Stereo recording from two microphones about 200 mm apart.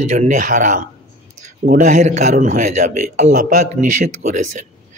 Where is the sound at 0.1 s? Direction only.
40° right (ahead or behind).